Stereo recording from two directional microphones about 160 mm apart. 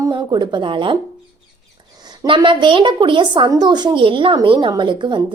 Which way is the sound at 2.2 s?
25° right (ahead or behind).